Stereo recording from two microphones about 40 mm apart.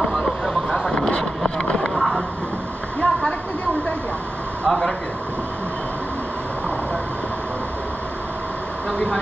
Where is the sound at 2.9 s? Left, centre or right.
Left.